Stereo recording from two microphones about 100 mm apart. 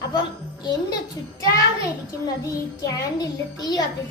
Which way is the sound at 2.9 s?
40° left (ahead or behind).